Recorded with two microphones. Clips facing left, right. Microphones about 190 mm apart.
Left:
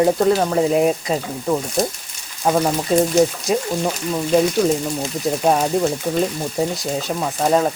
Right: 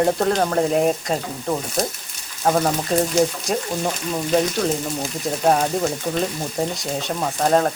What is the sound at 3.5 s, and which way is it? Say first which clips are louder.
Speech: left 4 dB; centre (ahead or behind).